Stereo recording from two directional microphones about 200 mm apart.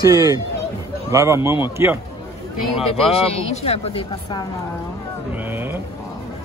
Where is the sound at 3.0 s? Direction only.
30° left (ahead or behind).